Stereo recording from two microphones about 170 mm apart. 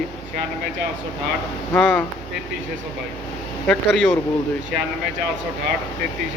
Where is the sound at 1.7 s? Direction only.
10° left (ahead or behind).